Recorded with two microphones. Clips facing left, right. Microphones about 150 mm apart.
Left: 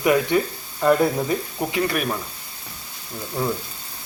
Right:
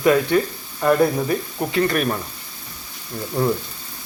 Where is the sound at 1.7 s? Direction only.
10° left (ahead or behind).